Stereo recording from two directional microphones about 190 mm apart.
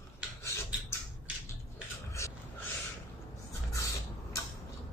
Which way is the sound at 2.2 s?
15° left (ahead or behind).